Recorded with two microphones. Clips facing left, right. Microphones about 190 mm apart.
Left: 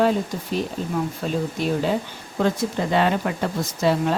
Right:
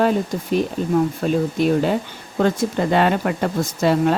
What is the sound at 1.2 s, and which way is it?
Speech, 55° right (ahead or behind).